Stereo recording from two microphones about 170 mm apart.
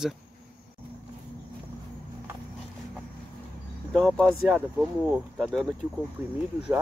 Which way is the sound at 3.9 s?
Centre (ahead or behind).